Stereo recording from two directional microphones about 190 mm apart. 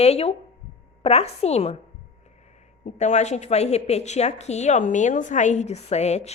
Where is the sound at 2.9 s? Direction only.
35° left (ahead or behind).